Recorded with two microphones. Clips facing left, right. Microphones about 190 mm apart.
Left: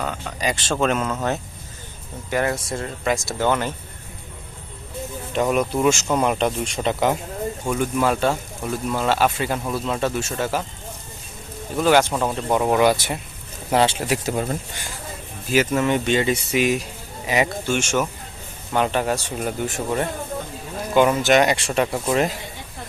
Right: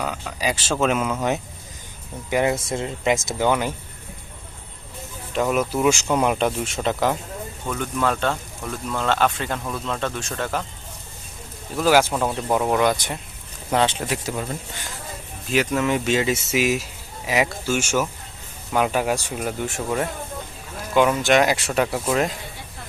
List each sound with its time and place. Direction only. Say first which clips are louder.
0.0 s speech: even; 5° right (ahead or behind)
5.3 s speech: left 1 dB; centre (ahead or behind)
7.7 s speech: left 2 dB; 10° left (ahead or behind)
11.8 s speech: left 1 dB; 5° right (ahead or behind)
15.4 s speech: left 2 dB; centre (ahead or behind)